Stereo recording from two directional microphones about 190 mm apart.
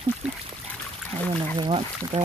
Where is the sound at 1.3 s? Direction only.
30° right (ahead or behind).